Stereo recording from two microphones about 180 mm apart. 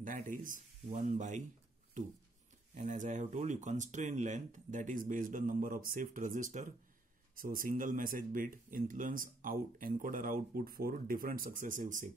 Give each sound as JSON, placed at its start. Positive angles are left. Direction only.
{"t": 0.0, "sound": "speech", "side_deg": -45}